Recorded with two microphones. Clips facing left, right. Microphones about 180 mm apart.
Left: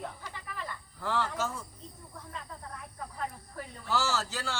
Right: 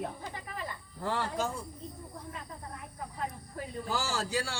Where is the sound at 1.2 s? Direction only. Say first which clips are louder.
Even; 15° right (ahead or behind).